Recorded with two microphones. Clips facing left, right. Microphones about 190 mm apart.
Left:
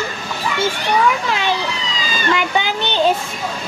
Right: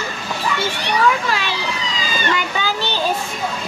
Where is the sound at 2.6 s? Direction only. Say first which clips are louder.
Left 4 dB; 20° left (ahead or behind).